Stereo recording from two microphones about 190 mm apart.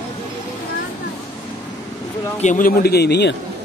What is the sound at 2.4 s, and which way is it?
Speech, 45° left (ahead or behind).